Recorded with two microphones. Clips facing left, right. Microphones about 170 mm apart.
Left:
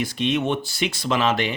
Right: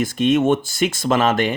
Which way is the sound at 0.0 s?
50° right (ahead or behind).